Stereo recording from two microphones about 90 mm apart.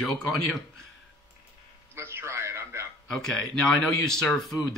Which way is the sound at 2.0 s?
30° right (ahead or behind).